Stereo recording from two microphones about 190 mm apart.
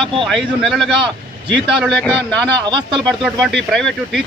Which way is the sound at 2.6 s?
25° right (ahead or behind).